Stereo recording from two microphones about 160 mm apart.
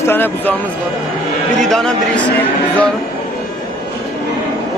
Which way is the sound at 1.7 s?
5° left (ahead or behind).